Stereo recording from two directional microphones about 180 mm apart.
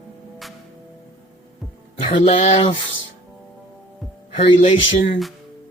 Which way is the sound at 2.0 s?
30° left (ahead or behind).